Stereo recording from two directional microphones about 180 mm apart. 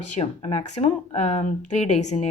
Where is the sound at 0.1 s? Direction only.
35° left (ahead or behind).